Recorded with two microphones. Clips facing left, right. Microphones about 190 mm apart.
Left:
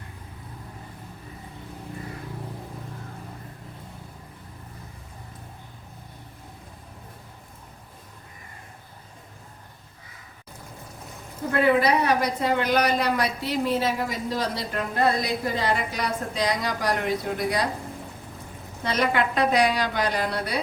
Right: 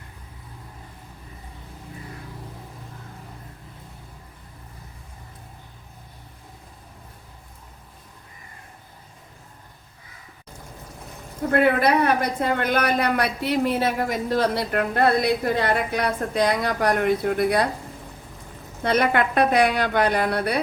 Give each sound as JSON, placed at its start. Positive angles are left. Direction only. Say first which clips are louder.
{"t": 11.5, "sound": "a woman's voice", "louder": "right 2 dB", "side_deg": -55}
{"t": 18.8, "sound": "a woman's voice", "louder": "right 3 dB", "side_deg": -55}